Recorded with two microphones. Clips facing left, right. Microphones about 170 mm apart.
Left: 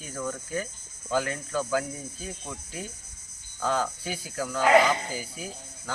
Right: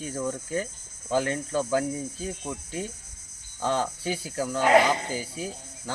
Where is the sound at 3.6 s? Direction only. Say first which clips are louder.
Right 1 dB; 30° right (ahead or behind).